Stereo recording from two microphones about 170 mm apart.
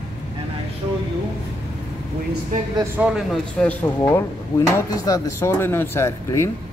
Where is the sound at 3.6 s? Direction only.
10° left (ahead or behind).